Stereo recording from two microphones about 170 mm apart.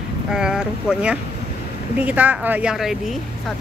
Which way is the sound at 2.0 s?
10° right (ahead or behind).